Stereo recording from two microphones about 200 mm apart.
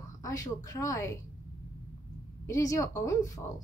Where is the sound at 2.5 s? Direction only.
15° left (ahead or behind).